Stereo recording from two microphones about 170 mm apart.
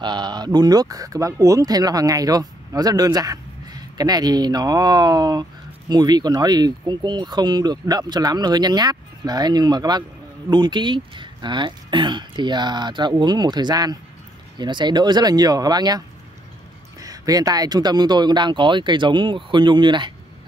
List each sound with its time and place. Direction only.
0.0 s speech: 25° right (ahead or behind)
17.0 s speech: 20° right (ahead or behind)